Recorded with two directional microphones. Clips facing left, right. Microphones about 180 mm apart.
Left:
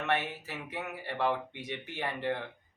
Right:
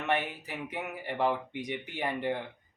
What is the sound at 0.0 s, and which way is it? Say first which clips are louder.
Speech: right 1 dB; 15° right (ahead or behind).